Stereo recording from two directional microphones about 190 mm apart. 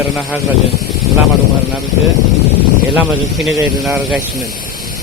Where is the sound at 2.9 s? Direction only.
Centre (ahead or behind).